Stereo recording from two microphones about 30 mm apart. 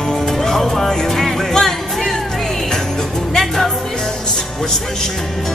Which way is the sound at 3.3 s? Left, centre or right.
Centre.